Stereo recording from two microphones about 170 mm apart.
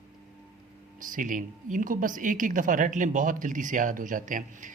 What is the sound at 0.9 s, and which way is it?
Speech, 50° right (ahead or behind).